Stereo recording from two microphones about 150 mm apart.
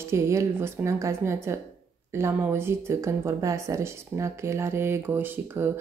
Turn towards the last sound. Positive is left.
turn(degrees=-15)  # may be behind; listen again after turning